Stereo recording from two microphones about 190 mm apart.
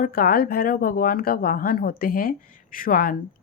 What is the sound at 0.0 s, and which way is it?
Speech, 50° left (ahead or behind).